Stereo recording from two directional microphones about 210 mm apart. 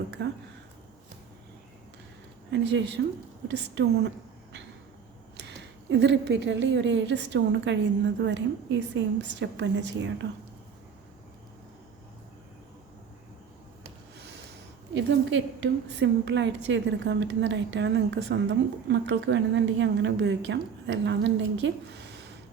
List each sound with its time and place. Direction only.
0.2 s a woman's voice: 55° right (ahead or behind)
2.5 s a woman's voice: 60° right (ahead or behind)
5.4 s a woman's voice: 60° right (ahead or behind)
14.9 s a woman's voice: 60° right (ahead or behind)